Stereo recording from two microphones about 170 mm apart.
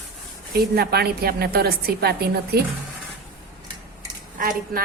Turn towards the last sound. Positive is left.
turn(degrees=-60)  # may be behind; listen again after turning